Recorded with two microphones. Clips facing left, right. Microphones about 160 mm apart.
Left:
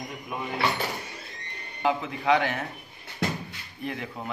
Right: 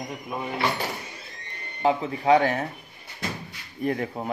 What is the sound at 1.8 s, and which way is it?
Speech, 35° right (ahead or behind).